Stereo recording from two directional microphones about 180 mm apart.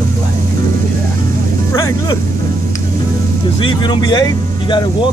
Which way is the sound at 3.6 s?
25° left (ahead or behind).